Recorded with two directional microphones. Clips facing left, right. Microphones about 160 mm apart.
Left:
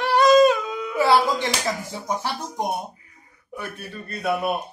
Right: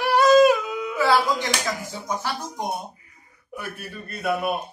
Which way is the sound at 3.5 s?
5° right (ahead or behind).